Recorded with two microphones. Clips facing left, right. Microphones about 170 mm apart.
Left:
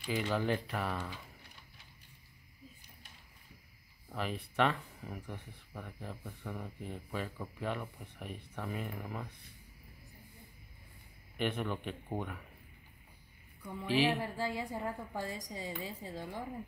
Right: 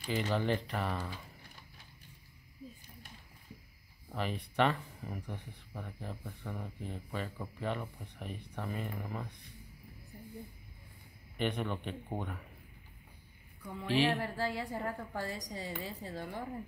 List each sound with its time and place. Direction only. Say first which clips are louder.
0.1 s speech: right 1 dB; centre (ahead or behind)
4.1 s speech: right 1 dB; centre (ahead or behind)
11.3 s speech: even; centre (ahead or behind)
13.8 s speech: even; 5° left (ahead or behind)
14.3 s a woman's voice: right 1 dB; 15° left (ahead or behind)